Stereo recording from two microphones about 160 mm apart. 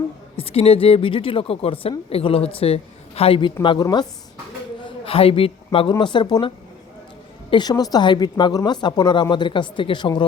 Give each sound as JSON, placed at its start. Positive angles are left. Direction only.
{"t": 0.3, "sound": "speech", "side_deg": 40}
{"t": 5.0, "sound": "speech", "side_deg": 35}
{"t": 7.5, "sound": "speech", "side_deg": 25}